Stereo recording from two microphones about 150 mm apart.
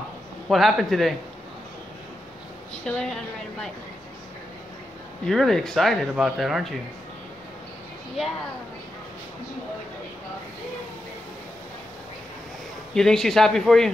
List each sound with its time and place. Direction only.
0.5 s speech: centre (ahead or behind)
2.8 s speech: 5° left (ahead or behind)
5.2 s speech: centre (ahead or behind)
12.9 s speech: 5° left (ahead or behind)